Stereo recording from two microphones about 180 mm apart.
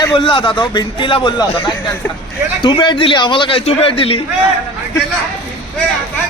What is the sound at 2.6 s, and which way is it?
A man's voice, 25° left (ahead or behind).